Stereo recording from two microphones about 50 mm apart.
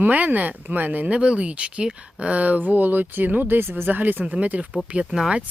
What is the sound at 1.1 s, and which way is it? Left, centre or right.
Speech, right.